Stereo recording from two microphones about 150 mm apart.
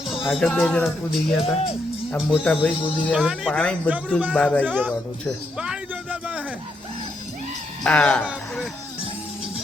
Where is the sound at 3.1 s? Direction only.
5° right (ahead or behind).